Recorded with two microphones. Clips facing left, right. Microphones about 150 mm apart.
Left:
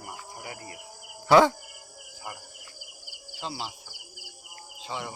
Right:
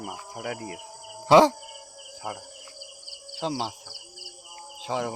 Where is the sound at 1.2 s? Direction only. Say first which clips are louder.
Right 2 dB; 25° right (ahead or behind).